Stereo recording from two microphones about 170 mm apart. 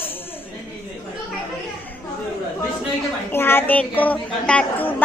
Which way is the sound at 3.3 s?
15° left (ahead or behind).